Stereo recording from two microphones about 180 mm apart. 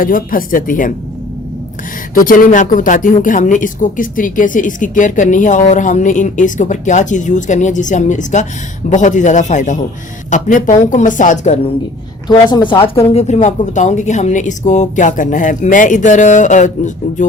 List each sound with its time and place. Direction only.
0.0 s speech: 50° left (ahead or behind)
2.1 s speech: 50° left (ahead or behind)
12.3 s speech: 25° left (ahead or behind); by 17.2 s 45° left (ahead or behind)